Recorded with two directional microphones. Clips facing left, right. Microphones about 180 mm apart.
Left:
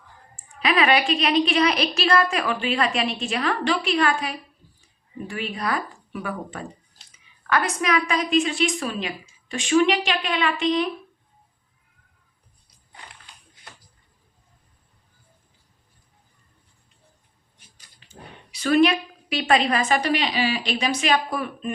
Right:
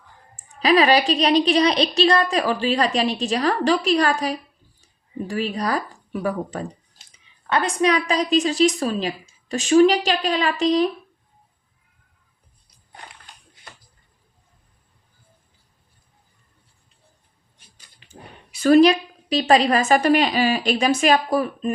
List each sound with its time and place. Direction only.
0.3 s a woman's voice: 35° right (ahead or behind)
18.1 s a woman's voice: 50° right (ahead or behind)